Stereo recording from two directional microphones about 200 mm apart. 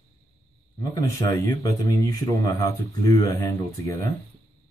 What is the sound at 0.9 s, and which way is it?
Speech, 15° left (ahead or behind).